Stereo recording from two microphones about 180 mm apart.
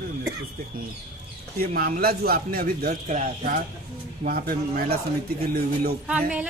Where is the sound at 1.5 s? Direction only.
55° right (ahead or behind).